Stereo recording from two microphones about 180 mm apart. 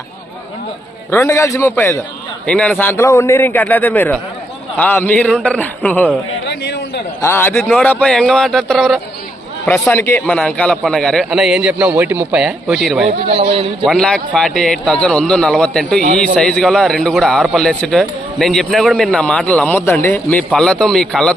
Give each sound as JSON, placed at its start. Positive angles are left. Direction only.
{"t": 1.1, "sound": "speech", "side_deg": 15}
{"t": 6.5, "sound": "a sound", "side_deg": 65}
{"t": 7.2, "sound": "a man's voice", "side_deg": 15}
{"t": 13.2, "sound": "a man's voice", "side_deg": -35}
{"t": 13.8, "sound": "a man's voice", "side_deg": 5}